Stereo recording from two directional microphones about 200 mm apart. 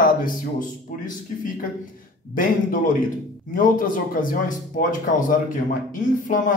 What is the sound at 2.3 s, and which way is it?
Speech, 45° left (ahead or behind).